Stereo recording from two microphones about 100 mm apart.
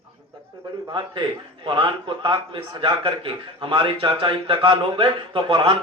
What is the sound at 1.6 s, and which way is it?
Speech, 55° right (ahead or behind).